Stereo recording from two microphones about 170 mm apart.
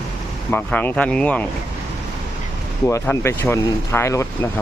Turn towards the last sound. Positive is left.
turn(degrees=15)  # may be behind; listen again after turning